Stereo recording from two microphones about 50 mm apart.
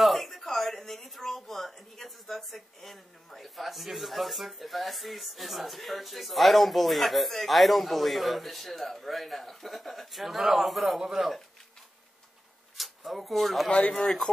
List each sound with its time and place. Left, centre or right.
0.0 s speech: centre
12.7 s speech: centre
13.7 s speech: left